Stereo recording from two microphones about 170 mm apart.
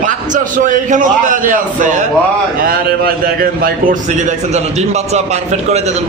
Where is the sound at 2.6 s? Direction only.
60° right (ahead or behind).